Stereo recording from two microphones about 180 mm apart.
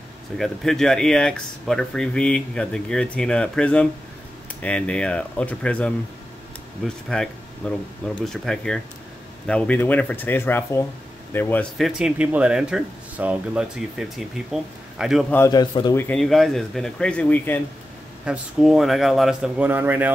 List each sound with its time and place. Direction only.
0.4 s speech: centre (ahead or behind)
11.8 s speech: 5° right (ahead or behind)
15.3 s a man's voice: 20° left (ahead or behind)
16.0 s speech: 5° left (ahead or behind)
18.2 s speech: 5° right (ahead or behind)